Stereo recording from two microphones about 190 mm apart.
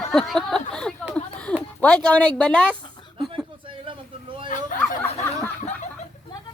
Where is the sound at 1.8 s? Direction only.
5° left (ahead or behind).